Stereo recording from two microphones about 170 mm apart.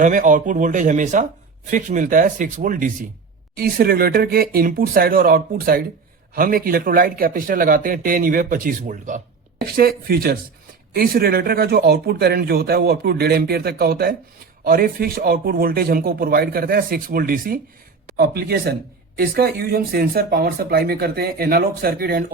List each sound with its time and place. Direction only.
0.0 s speech: 50° right (ahead or behind)
9.6 s speech: 65° right (ahead or behind)